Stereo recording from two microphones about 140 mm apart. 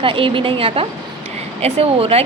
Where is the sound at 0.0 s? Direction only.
40° right (ahead or behind).